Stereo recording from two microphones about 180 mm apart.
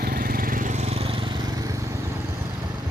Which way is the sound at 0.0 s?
55° right (ahead or behind).